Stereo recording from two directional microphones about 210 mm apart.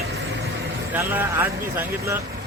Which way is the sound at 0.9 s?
10° right (ahead or behind).